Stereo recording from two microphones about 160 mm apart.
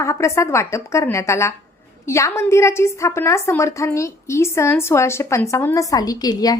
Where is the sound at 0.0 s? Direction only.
20° left (ahead or behind).